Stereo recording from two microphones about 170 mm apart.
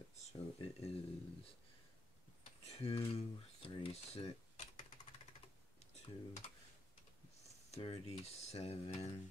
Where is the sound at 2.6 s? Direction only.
35° left (ahead or behind).